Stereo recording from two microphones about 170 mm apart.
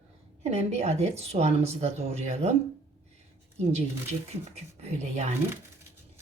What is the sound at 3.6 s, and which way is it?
A woman's voice, 40° right (ahead or behind).